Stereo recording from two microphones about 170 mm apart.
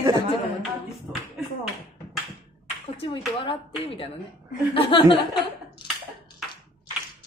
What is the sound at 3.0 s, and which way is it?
Speech, 30° left (ahead or behind).